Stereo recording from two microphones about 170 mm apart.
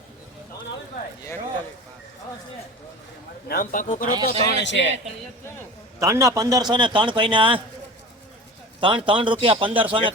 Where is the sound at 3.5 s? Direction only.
55° left (ahead or behind).